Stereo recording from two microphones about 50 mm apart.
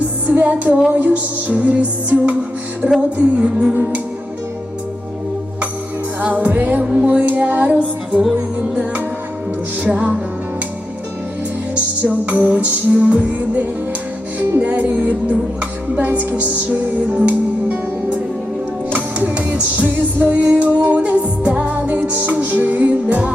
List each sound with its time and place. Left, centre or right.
0.3 s music: right
6.1 s music: right
9.8 s music: right
12.2 s music: right
16.0 s music: right
19.3 s music: right